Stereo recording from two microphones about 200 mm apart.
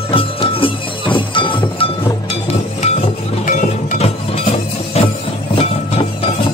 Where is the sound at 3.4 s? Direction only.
40° left (ahead or behind).